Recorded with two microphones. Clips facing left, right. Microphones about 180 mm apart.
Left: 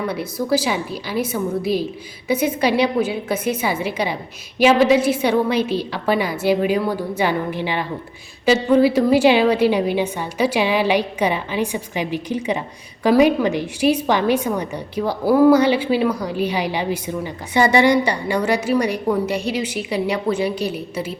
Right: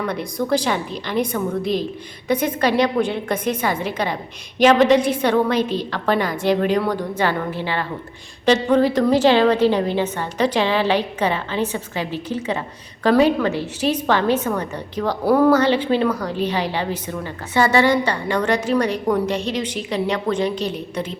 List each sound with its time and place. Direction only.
0.0 s a woman's voice: 5° left (ahead or behind)